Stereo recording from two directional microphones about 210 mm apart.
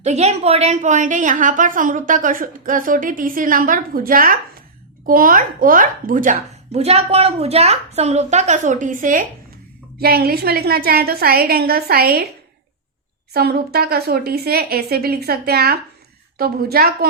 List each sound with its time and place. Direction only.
0.0 s a woman's voice: 30° right (ahead or behind)
13.3 s a woman's voice: 50° right (ahead or behind)